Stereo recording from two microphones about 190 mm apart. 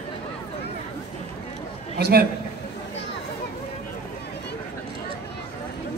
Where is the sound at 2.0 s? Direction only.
55° right (ahead or behind).